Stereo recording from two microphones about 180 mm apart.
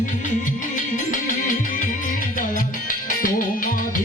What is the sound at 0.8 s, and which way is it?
Music, 45° left (ahead or behind).